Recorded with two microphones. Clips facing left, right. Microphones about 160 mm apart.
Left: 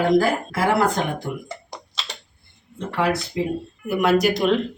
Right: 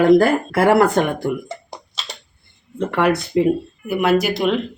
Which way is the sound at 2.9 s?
60° right (ahead or behind).